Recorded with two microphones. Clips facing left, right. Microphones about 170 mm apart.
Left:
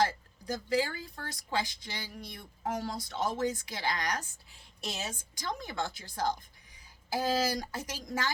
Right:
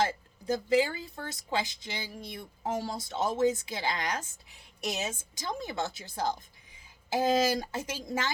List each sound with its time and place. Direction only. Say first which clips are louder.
0.0 s speech: even; 25° right (ahead or behind)